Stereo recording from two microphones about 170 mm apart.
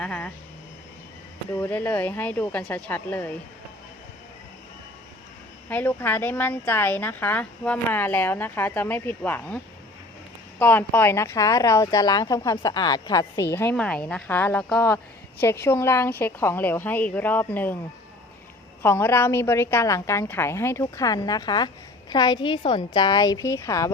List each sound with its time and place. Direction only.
0.0 s speech: 5° left (ahead or behind)
1.5 s a woman's voice: 15° left (ahead or behind)
5.6 s a woman's voice: 10° left (ahead or behind)
10.6 s a woman's voice: 10° left (ahead or behind)
18.8 s a woman's voice: 15° left (ahead or behind)